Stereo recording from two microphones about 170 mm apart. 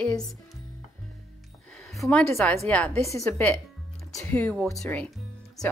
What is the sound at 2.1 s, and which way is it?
Speech, 10° left (ahead or behind).